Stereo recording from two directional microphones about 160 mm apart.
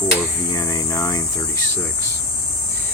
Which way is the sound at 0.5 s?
20° left (ahead or behind).